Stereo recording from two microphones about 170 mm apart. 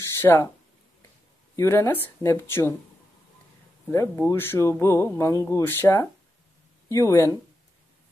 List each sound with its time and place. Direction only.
0.2 s speech: 15° left (ahead or behind)
1.6 s speech: 15° left (ahead or behind)
3.9 s speech: 15° left (ahead or behind)